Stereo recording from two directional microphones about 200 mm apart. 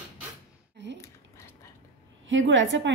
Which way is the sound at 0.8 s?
60° right (ahead or behind).